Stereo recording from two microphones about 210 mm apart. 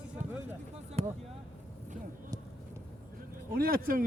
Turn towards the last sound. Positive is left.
turn(degrees=-45)  # may be behind; listen again after turning